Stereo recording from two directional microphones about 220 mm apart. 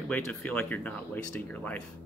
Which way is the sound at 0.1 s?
5° left (ahead or behind).